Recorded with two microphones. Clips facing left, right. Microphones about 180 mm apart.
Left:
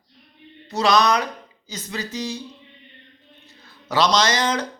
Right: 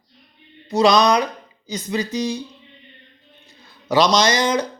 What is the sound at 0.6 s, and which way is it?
Speech, 15° right (ahead or behind).